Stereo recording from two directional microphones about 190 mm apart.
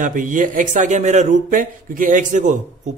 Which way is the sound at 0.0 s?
45° right (ahead or behind).